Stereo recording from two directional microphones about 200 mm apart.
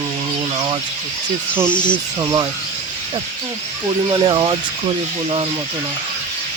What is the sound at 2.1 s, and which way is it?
Speech, 20° right (ahead or behind).